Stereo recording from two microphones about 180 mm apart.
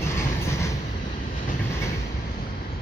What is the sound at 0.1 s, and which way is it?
Train, 15° left (ahead or behind).